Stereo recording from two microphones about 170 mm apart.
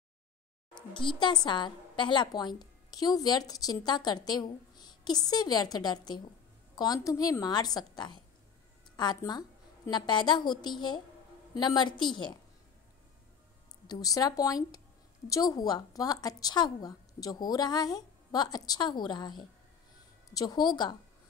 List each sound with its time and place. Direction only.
0.7 s a woman's voice: 30° left (ahead or behind)
13.8 s a woman's voice: 25° left (ahead or behind)